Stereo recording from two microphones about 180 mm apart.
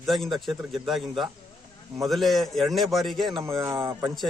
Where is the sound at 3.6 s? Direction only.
15° right (ahead or behind).